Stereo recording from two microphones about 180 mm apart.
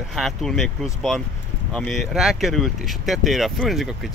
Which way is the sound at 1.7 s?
Centre (ahead or behind).